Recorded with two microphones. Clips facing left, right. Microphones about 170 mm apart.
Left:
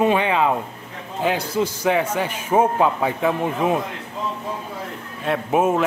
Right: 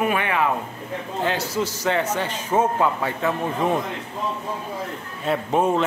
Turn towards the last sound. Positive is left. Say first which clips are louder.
# left 1 dB
turn(degrees=5)  # may be behind; listen again after turning